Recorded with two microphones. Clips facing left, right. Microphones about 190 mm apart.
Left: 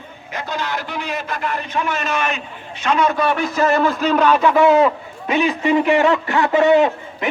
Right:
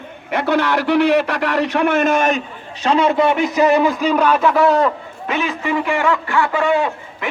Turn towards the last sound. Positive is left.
turn(degrees=20)  # may be behind; listen again after turning